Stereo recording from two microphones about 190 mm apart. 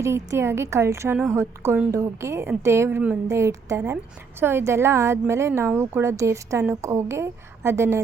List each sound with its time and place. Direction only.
0.0 s speech: 15° right (ahead or behind)